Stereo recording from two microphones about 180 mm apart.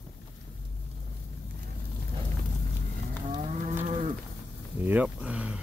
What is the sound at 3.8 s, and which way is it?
Livestock, 40° right (ahead or behind).